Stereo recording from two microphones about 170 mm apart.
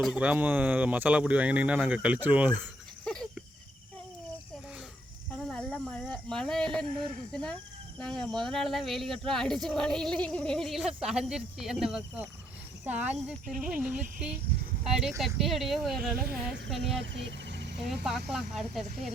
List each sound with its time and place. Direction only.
0.0 s speech: 5° right (ahead or behind)
3.0 s a sound: 5° left (ahead or behind)
5.5 s speech: 5° left (ahead or behind)
7.9 s speech: 5° left (ahead or behind)
17.2 s a sound: 90° right
17.8 s speech: centre (ahead or behind)